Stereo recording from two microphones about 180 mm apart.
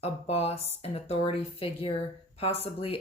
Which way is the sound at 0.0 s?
35° left (ahead or behind).